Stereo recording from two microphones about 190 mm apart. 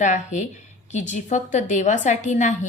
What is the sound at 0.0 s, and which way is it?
A woman's voice, 40° left (ahead or behind).